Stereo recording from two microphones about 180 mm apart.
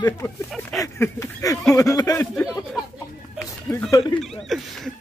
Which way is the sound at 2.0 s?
15° left (ahead or behind).